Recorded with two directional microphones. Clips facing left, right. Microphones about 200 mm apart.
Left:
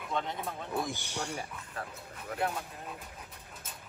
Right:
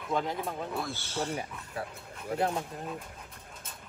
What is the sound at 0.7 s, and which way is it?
Speech, 15° left (ahead or behind).